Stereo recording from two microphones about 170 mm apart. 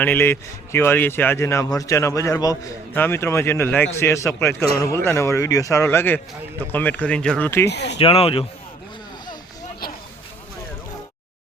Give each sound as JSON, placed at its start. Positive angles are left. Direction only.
{"t": 0.0, "sound": "a man's voice", "side_deg": 10}
{"t": 7.7, "sound": "speech", "side_deg": 80}
{"t": 7.9, "sound": "speech", "side_deg": 35}